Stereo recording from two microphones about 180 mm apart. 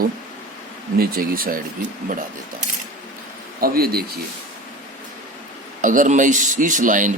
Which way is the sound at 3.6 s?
55° right (ahead or behind).